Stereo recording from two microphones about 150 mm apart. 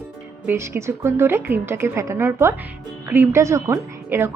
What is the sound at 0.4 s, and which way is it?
A woman's voice, 15° right (ahead or behind).